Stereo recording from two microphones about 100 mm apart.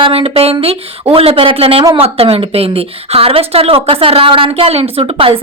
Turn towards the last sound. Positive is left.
turn(degrees=-65)  # may be behind; listen again after turning